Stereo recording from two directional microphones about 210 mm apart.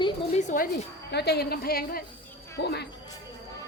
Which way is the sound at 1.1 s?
50° left (ahead or behind).